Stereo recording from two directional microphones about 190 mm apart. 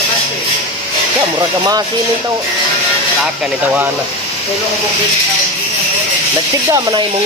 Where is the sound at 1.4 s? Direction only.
20° right (ahead or behind).